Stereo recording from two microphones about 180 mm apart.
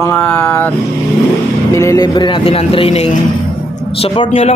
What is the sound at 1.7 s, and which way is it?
A man's voice, 20° left (ahead or behind).